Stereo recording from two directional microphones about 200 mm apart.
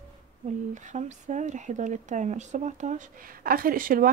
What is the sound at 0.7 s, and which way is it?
Speech, 35° right (ahead or behind).